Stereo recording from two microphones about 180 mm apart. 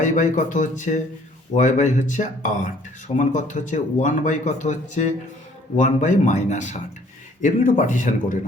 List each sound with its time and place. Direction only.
0.0 s speech: 45° left (ahead or behind)